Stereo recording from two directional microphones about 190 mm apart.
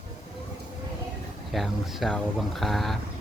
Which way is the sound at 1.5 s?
Centre (ahead or behind).